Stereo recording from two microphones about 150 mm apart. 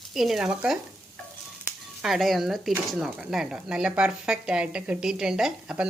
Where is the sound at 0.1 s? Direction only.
Centre (ahead or behind).